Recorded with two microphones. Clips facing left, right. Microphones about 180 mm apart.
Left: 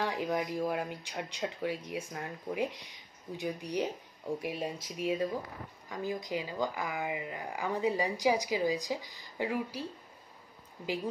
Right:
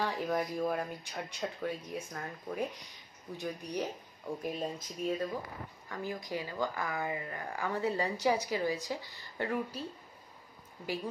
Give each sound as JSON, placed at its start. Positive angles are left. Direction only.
{"t": 0.0, "sound": "speech", "side_deg": 10}